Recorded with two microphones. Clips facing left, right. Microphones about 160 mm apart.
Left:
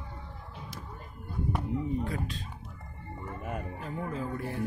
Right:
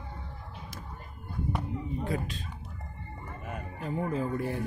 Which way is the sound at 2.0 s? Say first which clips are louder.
Right 2 dB; 20° right (ahead or behind).